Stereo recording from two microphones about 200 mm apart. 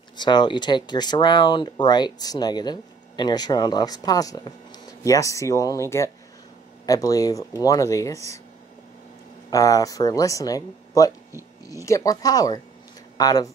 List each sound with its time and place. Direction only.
0.2 s speech: 20° left (ahead or behind)
9.5 s speech: 15° left (ahead or behind)